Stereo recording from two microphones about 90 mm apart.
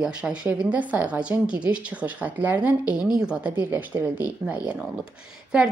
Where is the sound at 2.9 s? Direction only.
5° right (ahead or behind).